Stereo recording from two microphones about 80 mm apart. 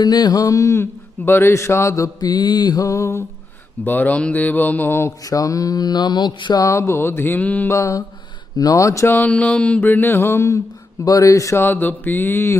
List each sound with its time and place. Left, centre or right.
0.0 s a sound: left
2.1 s mantra: left
2.9 s a sound: left
3.8 s mantra: left
5.2 s mantra: left
6.6 s mantra: left
7.7 s a sound: left
9.1 s mantra: centre; by 11.6 s left
11.6 s mantra: left